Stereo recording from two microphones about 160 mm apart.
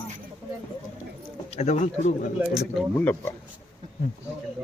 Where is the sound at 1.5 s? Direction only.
45° left (ahead or behind).